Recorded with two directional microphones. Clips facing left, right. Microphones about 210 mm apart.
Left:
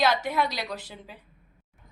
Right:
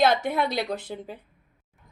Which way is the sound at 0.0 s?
50° right (ahead or behind).